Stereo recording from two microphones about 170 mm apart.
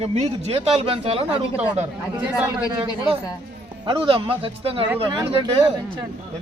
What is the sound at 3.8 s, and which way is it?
Speech, 30° right (ahead or behind).